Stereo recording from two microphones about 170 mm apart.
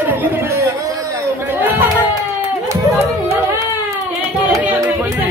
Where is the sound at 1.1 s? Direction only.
10° right (ahead or behind).